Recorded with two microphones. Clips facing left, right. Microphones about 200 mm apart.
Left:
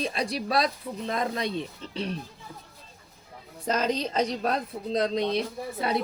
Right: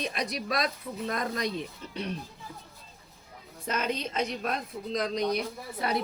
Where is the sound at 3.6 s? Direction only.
35° left (ahead or behind).